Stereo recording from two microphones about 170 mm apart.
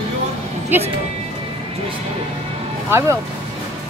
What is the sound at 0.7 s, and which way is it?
Speech, 10° right (ahead or behind).